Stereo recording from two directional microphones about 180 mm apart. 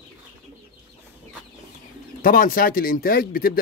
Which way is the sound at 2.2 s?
50° left (ahead or behind).